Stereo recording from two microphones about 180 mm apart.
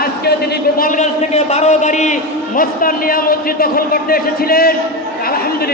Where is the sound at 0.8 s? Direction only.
40° left (ahead or behind); by 4.7 s 55° left (ahead or behind).